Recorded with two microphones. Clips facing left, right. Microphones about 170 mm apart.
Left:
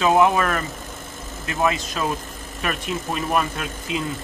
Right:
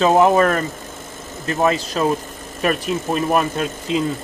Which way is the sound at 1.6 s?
35° right (ahead or behind).